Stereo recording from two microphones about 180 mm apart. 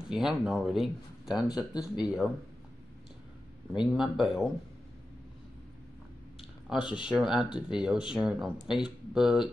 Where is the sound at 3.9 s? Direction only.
Centre (ahead or behind).